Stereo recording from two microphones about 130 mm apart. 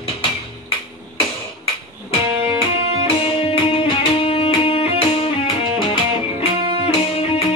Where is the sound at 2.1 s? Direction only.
45° left (ahead or behind).